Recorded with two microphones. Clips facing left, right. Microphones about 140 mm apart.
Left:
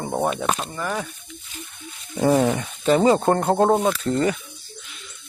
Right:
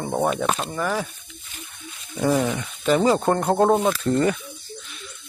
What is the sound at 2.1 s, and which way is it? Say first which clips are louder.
Speech: left 3 dB; 30° left (ahead or behind).